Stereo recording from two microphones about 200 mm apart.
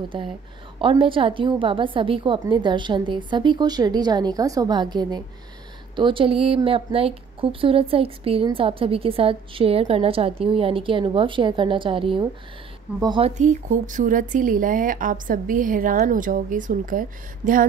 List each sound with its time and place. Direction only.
0.7 s a woman's voice: 25° right (ahead or behind)
13.4 s speech: 40° right (ahead or behind)